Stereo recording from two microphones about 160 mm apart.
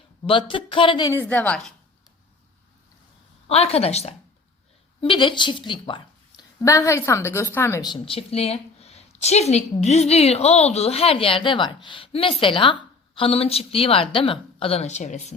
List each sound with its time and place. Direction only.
0.3 s a woman's voice: 30° left (ahead or behind)
1.1 s a woman's voice: 10° left (ahead or behind)
3.4 s a woman's voice: 40° left (ahead or behind)
6.7 s a woman's voice: 20° left (ahead or behind); by 15.4 s 45° left (ahead or behind)